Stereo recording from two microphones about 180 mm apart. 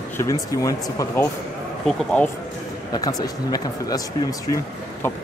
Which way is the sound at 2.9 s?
20° left (ahead or behind).